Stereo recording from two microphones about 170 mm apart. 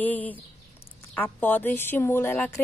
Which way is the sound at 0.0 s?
10° left (ahead or behind).